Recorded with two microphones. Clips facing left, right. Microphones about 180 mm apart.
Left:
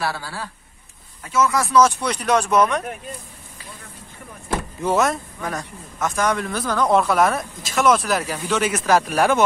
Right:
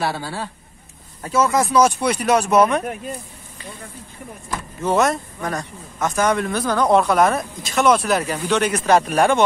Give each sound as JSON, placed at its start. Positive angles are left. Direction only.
{"t": 0.0, "sound": "speech", "side_deg": -25}
{"t": 1.6, "sound": "speech", "side_deg": -15}
{"t": 4.8, "sound": "speech", "side_deg": 0}